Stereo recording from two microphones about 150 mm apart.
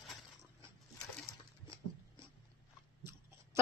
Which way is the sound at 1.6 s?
35° left (ahead or behind).